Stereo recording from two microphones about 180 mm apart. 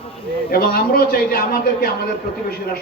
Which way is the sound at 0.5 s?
55° left (ahead or behind).